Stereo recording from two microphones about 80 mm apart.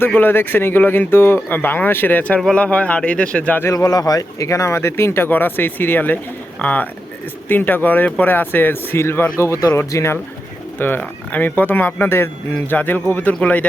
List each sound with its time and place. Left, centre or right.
0.1 s speech: left
3.8 s speech: left; by 13.7 s centre